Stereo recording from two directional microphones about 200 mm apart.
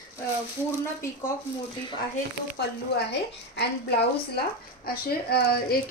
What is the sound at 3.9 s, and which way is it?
Speech, 50° left (ahead or behind).